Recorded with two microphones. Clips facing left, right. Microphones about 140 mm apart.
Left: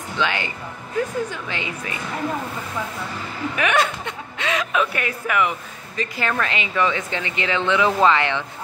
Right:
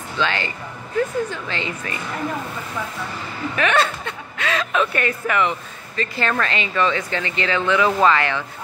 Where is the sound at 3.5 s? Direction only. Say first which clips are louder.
Right 1 dB; 10° left (ahead or behind).